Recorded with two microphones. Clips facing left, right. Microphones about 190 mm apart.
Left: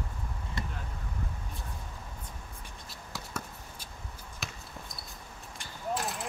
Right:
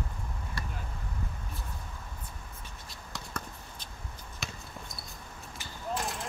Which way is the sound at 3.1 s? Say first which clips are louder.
Even; 5° left (ahead or behind).